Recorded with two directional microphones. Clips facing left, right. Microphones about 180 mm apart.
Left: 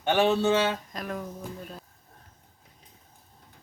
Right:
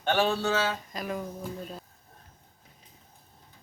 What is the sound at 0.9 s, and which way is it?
Speech, centre (ahead or behind).